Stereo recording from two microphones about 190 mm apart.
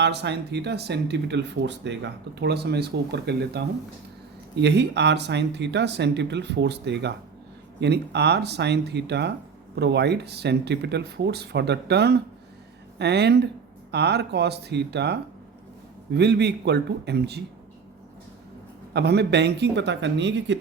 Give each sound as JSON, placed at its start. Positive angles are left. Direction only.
{"t": 0.0, "sound": "speech", "side_deg": -65}
{"t": 18.9, "sound": "speech", "side_deg": -60}